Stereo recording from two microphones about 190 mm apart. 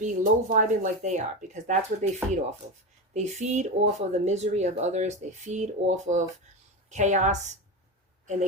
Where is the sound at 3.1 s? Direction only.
35° right (ahead or behind).